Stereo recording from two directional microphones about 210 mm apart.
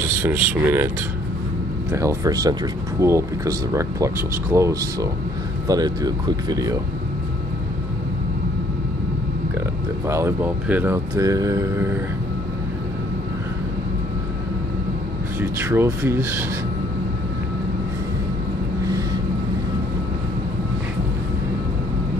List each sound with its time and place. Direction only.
0.2 s speech: 10° right (ahead or behind)
1.9 s speech: 15° right (ahead or behind)
10.0 s speech: 15° right (ahead or behind)
15.4 s speech: 10° right (ahead or behind)